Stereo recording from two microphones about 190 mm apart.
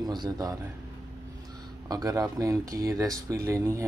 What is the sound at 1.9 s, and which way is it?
Speech, 20° right (ahead or behind).